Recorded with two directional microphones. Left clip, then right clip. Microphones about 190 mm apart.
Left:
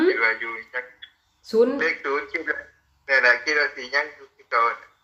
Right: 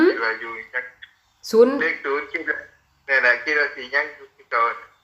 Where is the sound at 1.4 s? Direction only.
25° right (ahead or behind).